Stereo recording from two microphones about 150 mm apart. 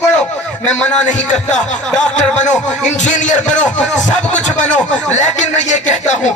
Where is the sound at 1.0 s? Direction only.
55° left (ahead or behind).